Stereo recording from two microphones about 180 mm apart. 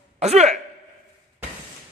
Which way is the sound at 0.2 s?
35° right (ahead or behind).